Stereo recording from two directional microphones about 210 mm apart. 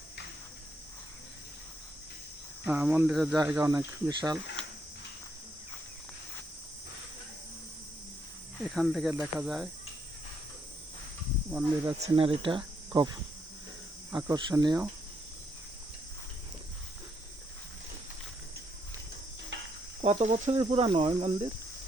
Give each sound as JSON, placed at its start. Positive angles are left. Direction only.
{"t": 2.6, "sound": "speech", "side_deg": -5}
{"t": 8.7, "sound": "speech", "side_deg": 0}
{"t": 11.5, "sound": "speech", "side_deg": -15}
{"t": 11.9, "sound": "speech", "side_deg": -30}
{"t": 14.1, "sound": "speech", "side_deg": -15}
{"t": 20.0, "sound": "speech", "side_deg": -30}